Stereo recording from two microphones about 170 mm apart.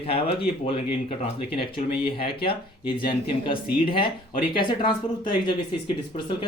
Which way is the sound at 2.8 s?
30° left (ahead or behind).